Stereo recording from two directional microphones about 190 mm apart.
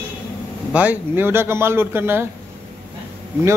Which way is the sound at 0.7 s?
10° right (ahead or behind).